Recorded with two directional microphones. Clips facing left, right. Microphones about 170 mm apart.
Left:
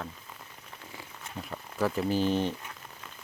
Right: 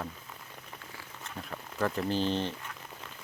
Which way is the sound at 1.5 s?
10° left (ahead or behind).